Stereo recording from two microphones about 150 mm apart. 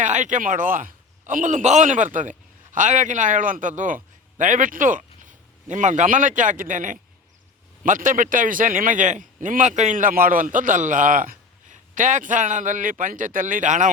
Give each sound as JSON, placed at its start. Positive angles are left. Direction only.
{"t": 0.0, "sound": "a man's voice", "side_deg": -55}